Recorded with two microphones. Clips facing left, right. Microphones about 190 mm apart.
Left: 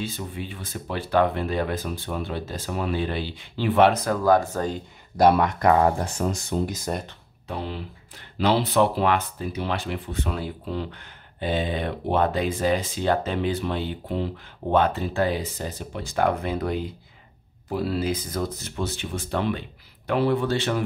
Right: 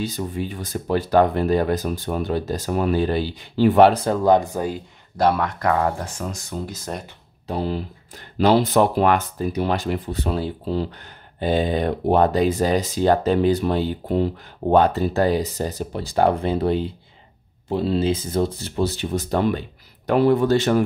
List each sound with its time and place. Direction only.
0.0 s speech: 40° right (ahead or behind); by 4.8 s 10° right (ahead or behind)
5.1 s speech: 15° left (ahead or behind)
6.6 s speech: 15° left (ahead or behind)
7.4 s a man's voice: 35° right (ahead or behind)